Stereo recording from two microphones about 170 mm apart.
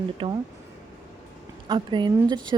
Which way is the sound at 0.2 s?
30° right (ahead or behind).